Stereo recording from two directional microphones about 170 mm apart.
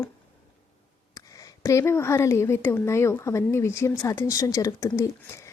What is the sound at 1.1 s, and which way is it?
Speech, 20° left (ahead or behind).